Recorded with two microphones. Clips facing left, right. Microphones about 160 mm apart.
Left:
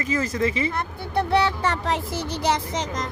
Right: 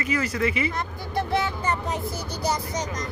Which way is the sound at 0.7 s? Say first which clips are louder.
Left 3 dB; 65° left (ahead or behind).